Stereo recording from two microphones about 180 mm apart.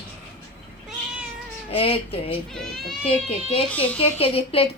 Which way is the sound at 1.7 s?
30° left (ahead or behind).